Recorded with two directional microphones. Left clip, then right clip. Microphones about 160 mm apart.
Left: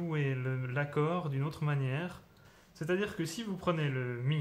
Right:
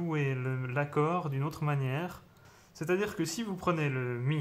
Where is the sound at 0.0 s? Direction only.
25° right (ahead or behind).